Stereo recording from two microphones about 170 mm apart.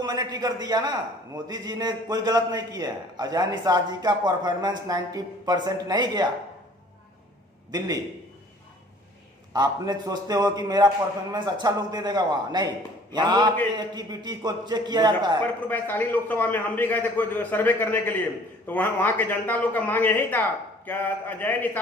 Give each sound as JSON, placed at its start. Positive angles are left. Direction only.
{"t": 0.0, "sound": "a man's voice", "side_deg": -20}
{"t": 9.5, "sound": "a man's voice", "side_deg": -25}
{"t": 15.4, "sound": "a man's voice", "side_deg": 10}